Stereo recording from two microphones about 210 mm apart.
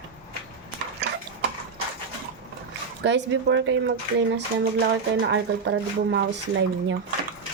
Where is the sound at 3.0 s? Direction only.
60° right (ahead or behind).